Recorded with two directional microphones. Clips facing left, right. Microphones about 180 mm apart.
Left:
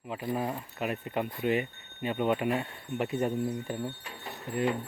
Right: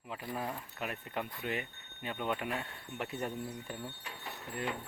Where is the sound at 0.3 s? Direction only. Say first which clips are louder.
Left 3 dB; 10° left (ahead or behind).